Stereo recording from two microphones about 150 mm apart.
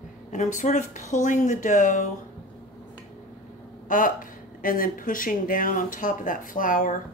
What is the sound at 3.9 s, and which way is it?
Speech, 65° left (ahead or behind).